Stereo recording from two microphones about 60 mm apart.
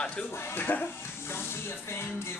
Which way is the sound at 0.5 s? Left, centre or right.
Left.